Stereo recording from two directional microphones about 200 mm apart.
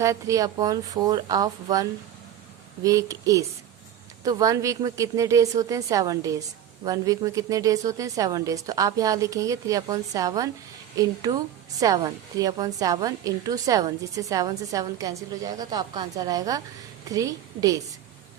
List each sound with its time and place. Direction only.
0.0 s speech: 15° right (ahead or behind)